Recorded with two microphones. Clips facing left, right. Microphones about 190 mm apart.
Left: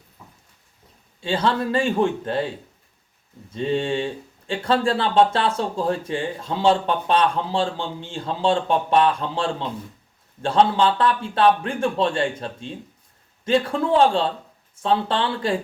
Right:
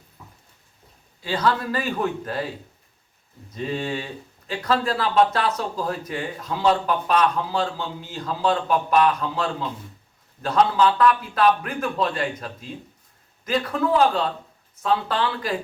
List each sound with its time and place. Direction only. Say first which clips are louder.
1.2 s speech: left 1 dB; 25° left (ahead or behind)
3.5 s speech: left 5 dB; 25° left (ahead or behind)